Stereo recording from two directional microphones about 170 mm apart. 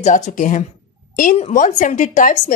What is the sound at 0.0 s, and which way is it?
Speech, 45° left (ahead or behind).